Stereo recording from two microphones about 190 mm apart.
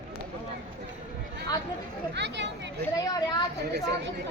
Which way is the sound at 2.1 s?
65° right (ahead or behind).